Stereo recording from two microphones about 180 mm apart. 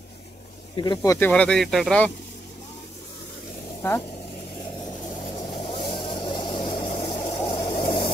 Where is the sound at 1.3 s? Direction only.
5° left (ahead or behind).